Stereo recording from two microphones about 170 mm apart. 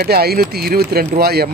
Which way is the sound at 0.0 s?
65° right (ahead or behind).